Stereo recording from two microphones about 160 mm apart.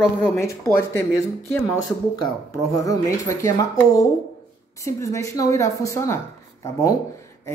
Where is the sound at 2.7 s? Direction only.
20° left (ahead or behind).